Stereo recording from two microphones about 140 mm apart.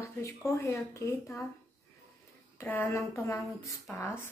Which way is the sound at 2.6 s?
15° left (ahead or behind).